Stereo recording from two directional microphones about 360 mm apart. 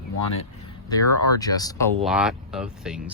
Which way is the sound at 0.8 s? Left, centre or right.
Centre.